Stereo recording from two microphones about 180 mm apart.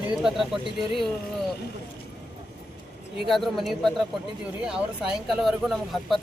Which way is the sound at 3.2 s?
Centre (ahead or behind).